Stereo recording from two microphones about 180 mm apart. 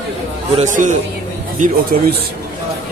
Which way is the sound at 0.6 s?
45° right (ahead or behind).